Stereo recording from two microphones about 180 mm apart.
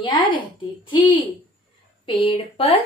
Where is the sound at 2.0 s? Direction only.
30° left (ahead or behind).